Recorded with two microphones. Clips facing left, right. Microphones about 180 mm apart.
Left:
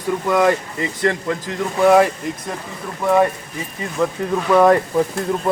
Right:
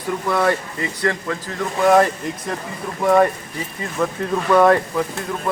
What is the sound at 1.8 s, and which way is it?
Speech, 5° left (ahead or behind).